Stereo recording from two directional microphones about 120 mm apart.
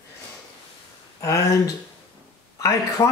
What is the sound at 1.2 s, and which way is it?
Speech, 25° left (ahead or behind).